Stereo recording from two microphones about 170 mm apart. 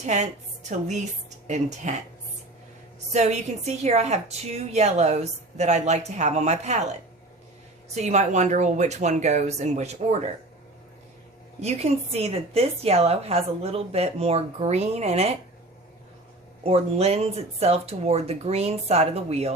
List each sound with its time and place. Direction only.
0.0 s speech: 40° right (ahead or behind)
1.5 s speech: 45° right (ahead or behind)
3.1 s a woman's voice: 40° right (ahead or behind)
7.9 s speech: 40° right (ahead or behind)
11.6 s a woman's voice: 40° right (ahead or behind)
16.6 s a woman's voice: 35° right (ahead or behind)